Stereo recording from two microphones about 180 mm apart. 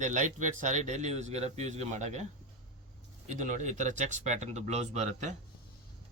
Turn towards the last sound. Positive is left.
turn(degrees=-40)  # may be behind; listen again after turning